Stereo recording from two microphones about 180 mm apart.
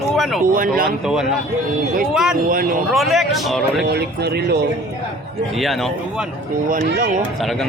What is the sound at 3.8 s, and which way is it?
Speech, 65° right (ahead or behind).